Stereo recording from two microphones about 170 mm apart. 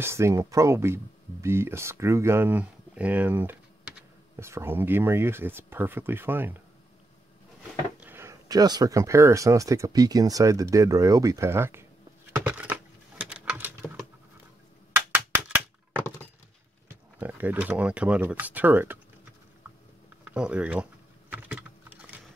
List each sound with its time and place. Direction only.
0.0 s speech: 15° right (ahead or behind)
8.0 s speech: 15° right (ahead or behind)
12.3 s a sound: 10° right (ahead or behind)
17.2 s speech: 10° right (ahead or behind)
20.2 s typing: 5° right (ahead or behind)